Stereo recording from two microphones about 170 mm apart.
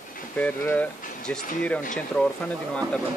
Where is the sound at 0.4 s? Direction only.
10° left (ahead or behind).